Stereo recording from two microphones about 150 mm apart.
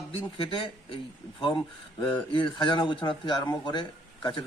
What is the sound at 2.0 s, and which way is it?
A man's voice, 30° left (ahead or behind).